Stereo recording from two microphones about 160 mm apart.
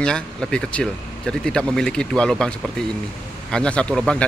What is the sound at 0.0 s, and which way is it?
Speech, 5° left (ahead or behind).